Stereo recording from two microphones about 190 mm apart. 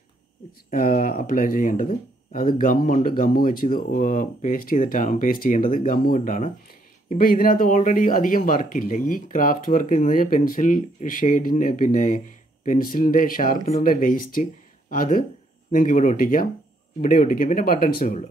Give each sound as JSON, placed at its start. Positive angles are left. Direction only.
{"t": 0.7, "sound": "speech", "side_deg": 50}